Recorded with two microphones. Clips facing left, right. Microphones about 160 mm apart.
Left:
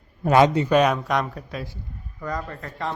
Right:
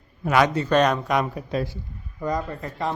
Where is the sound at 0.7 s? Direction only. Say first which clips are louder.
Left 1 dB; 5° left (ahead or behind).